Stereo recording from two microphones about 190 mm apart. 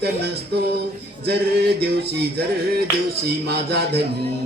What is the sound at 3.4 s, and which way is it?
Speech, 60° right (ahead or behind).